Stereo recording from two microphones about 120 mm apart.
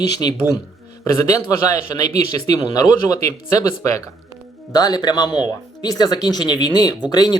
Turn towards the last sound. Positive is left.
turn(degrees=35)  # may be behind; listen again after turning